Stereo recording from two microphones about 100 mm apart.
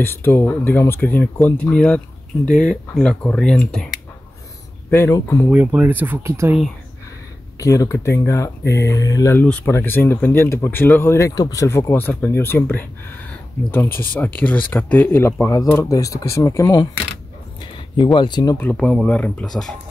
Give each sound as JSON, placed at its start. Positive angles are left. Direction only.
{"t": 0.0, "sound": "speech", "side_deg": 20}
{"t": 5.5, "sound": "speech", "side_deg": -15}
{"t": 7.5, "sound": "speech", "side_deg": 35}
{"t": 9.3, "sound": "speech", "side_deg": 15}
{"t": 11.6, "sound": "speech", "side_deg": 25}
{"t": 17.9, "sound": "speech", "side_deg": 50}
{"t": 18.6, "sound": "speech", "side_deg": 15}